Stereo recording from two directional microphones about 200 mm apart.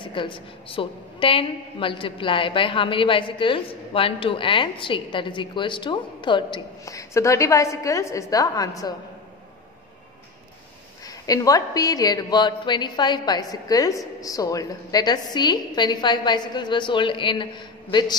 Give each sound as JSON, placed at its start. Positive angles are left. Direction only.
{"t": 0.0, "sound": "a woman's voice", "side_deg": 25}
{"t": 11.1, "sound": "a woman's voice", "side_deg": 20}